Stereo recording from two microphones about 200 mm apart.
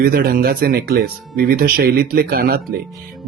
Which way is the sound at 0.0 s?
50° right (ahead or behind).